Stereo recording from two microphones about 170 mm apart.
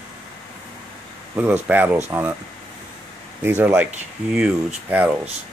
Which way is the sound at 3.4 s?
10° right (ahead or behind).